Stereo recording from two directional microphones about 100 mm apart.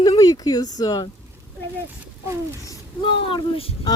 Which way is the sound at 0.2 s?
35° left (ahead or behind).